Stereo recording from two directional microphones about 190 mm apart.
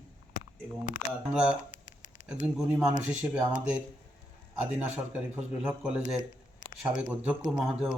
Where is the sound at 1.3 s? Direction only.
5° right (ahead or behind).